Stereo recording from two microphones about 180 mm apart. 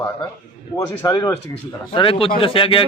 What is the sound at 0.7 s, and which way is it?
A man's voice, 20° left (ahead or behind).